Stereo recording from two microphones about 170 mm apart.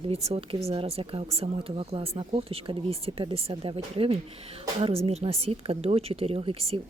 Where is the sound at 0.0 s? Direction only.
35° right (ahead or behind).